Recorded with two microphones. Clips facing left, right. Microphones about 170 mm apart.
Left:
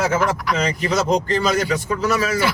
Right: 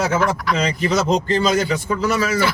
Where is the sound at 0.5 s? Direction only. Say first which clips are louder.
Right 1 dB; 25° right (ahead or behind).